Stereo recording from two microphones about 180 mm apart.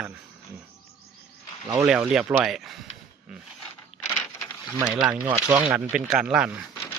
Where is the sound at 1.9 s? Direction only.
5° right (ahead or behind).